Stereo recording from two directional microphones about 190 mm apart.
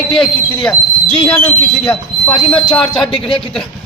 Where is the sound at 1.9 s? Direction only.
5° left (ahead or behind).